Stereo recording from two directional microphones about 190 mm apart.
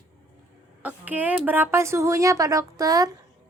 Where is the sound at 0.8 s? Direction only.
10° right (ahead or behind).